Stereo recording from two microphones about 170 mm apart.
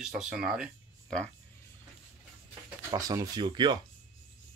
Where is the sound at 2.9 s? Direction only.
20° right (ahead or behind).